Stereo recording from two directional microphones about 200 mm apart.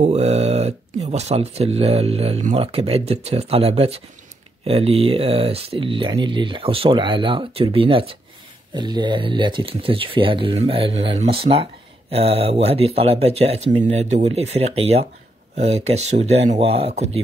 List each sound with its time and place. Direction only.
0.0 s speech: 30° right (ahead or behind)